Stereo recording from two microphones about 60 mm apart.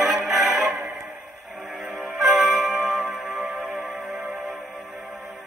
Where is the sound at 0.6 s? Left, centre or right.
Right.